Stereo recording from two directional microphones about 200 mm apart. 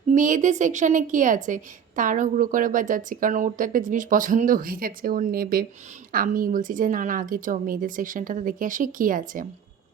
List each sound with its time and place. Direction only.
0.1 s a woman's voice: 40° right (ahead or behind)